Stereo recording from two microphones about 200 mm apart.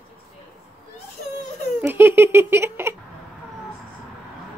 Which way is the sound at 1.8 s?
10° right (ahead or behind).